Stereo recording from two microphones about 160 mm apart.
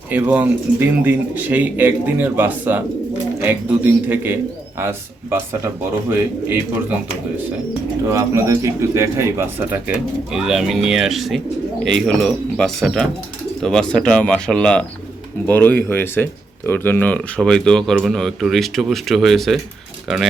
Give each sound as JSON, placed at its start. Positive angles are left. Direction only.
{"t": 0.1, "sound": "speech", "side_deg": -10}
{"t": 8.1, "sound": "speech", "side_deg": -20}